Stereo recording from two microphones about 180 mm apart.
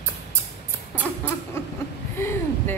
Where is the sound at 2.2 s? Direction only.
15° left (ahead or behind).